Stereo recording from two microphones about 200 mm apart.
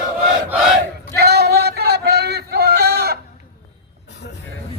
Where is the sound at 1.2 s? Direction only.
55° right (ahead or behind).